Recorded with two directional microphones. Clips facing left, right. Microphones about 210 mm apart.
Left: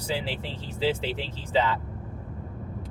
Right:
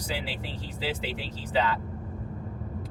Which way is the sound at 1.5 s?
25° left (ahead or behind).